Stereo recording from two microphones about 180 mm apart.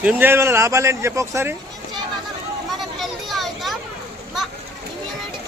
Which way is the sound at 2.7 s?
Centre (ahead or behind).